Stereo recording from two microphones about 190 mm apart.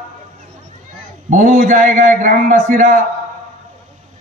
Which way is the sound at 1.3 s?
40° right (ahead or behind).